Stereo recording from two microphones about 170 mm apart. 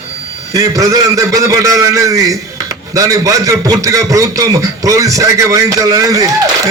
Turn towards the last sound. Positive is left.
turn(degrees=-20)  # may be behind; listen again after turning